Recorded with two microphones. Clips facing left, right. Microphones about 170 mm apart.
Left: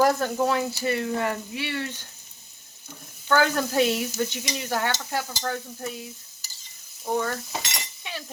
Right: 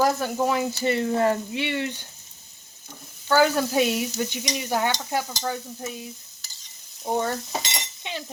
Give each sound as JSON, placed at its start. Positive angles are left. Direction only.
{"t": 0.0, "sound": "stir", "side_deg": -10}
{"t": 0.8, "sound": "frying", "side_deg": -25}
{"t": 1.6, "sound": "frying", "side_deg": -20}
{"t": 3.2, "sound": "stir", "side_deg": -10}
{"t": 7.0, "sound": "speech", "side_deg": -25}